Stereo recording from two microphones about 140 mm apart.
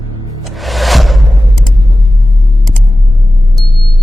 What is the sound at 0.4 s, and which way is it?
Music, centre (ahead or behind).